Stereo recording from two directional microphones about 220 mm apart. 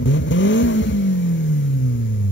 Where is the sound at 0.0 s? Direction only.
60° left (ahead or behind).